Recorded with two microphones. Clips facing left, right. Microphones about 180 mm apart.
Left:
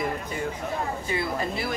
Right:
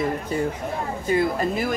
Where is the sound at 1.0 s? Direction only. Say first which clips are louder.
Right 7 dB; 45° right (ahead or behind).